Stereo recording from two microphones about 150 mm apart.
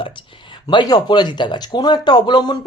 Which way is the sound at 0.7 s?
30° left (ahead or behind).